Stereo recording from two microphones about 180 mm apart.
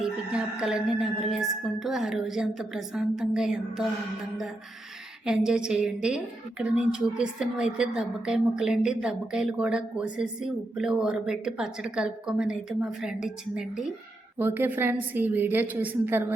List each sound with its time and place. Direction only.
0.0 s a woman's voice: 5° right (ahead or behind)
5.5 s a woman's voice: 5° right (ahead or behind)